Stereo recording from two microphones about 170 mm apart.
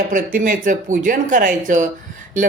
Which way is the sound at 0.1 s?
55° right (ahead or behind).